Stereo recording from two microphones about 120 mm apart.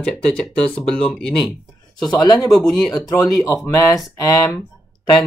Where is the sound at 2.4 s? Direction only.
Centre (ahead or behind).